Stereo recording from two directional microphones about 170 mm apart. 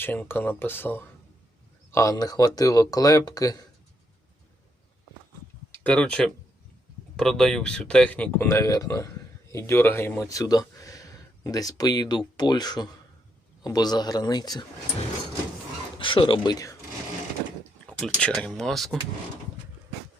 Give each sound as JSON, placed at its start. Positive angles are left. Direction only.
{"t": 0.0, "sound": "speech", "side_deg": 10}
{"t": 5.7, "sound": "speech", "side_deg": 10}
{"t": 16.0, "sound": "speech", "side_deg": 30}
{"t": 17.8, "sound": "speech", "side_deg": 5}